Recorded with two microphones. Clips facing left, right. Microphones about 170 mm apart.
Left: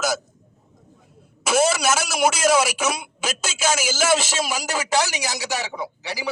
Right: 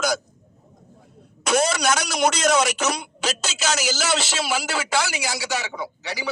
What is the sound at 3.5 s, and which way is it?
A man's voice, 50° left (ahead or behind).